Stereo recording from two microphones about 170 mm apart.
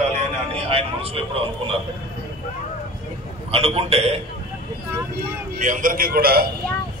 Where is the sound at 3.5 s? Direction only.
35° right (ahead or behind).